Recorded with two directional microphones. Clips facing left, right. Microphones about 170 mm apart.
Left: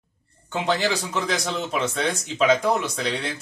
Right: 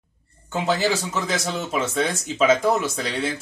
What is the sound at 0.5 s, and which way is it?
Speech, 5° right (ahead or behind).